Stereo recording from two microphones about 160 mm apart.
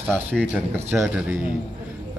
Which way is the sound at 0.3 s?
10° right (ahead or behind).